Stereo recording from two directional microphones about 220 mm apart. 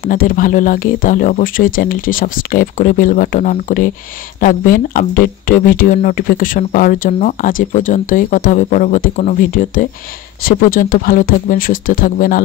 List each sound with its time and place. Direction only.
0.0 s speech: 40° left (ahead or behind)